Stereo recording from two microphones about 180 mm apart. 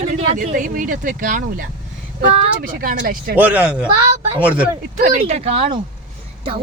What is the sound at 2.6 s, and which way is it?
Speech, 50° right (ahead or behind).